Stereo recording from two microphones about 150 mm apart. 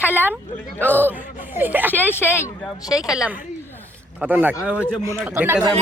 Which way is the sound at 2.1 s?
15° left (ahead or behind).